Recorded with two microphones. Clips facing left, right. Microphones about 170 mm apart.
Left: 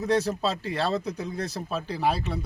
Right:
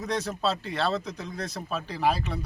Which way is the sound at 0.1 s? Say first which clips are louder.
Left 6 dB; 30° left (ahead or behind).